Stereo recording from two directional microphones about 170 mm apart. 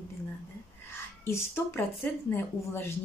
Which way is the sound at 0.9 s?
15° left (ahead or behind).